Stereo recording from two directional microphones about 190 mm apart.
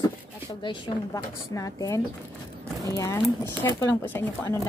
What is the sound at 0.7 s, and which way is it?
Speech, 15° left (ahead or behind).